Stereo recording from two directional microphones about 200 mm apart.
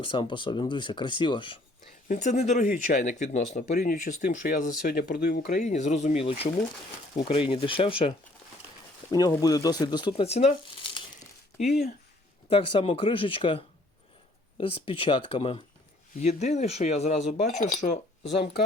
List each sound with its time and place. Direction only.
0.0 s speech: 25° left (ahead or behind)
2.0 s speech: 35° left (ahead or behind)
7.5 s speech: 25° left (ahead or behind)
9.1 s speech: 20° left (ahead or behind); by 18.3 s 35° left (ahead or behind)